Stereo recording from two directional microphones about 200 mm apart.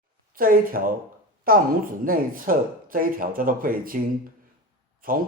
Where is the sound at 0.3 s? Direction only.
45° right (ahead or behind).